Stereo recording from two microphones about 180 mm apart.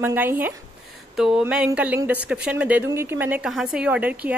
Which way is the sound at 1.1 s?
5° right (ahead or behind).